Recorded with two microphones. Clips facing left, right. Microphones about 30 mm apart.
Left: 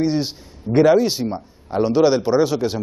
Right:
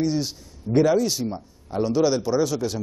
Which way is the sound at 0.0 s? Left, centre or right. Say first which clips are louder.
Left 4 dB; left.